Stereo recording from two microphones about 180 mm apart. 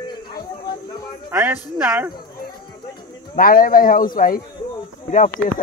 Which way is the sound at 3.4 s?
50° left (ahead or behind).